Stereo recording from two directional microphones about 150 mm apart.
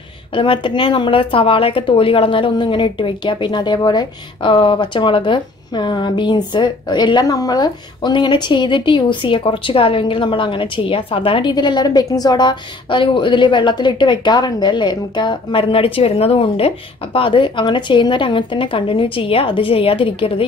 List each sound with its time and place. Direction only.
0.3 s a woman's voice: 35° left (ahead or behind)